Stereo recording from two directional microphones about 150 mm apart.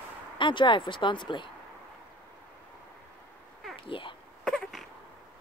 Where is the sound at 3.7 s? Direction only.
35° left (ahead or behind).